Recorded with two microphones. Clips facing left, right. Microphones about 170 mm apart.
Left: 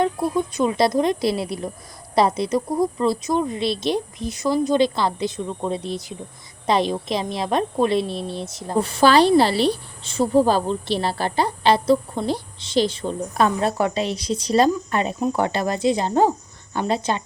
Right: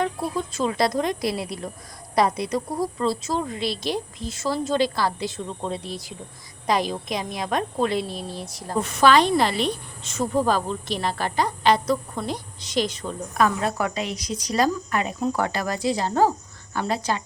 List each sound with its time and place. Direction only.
0.0 s a woman's voice: 20° left (ahead or behind)